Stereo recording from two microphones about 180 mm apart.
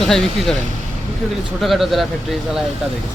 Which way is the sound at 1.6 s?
Centre (ahead or behind).